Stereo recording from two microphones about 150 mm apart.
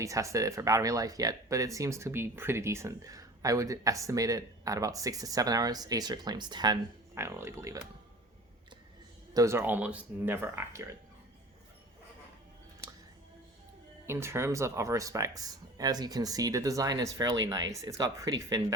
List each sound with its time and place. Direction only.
0.0 s speech: 20° right (ahead or behind)
7.2 s speech: 15° right (ahead or behind)
9.3 s speech: 20° right (ahead or behind)
14.1 s speech: 15° right (ahead or behind)